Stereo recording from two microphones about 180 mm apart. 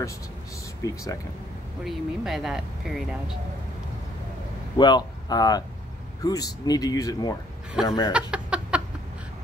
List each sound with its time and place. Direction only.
0.8 s speech: 20° left (ahead or behind)
1.9 s speech: centre (ahead or behind)
4.7 s speech: 25° left (ahead or behind)
8.1 s a sound: 5° right (ahead or behind)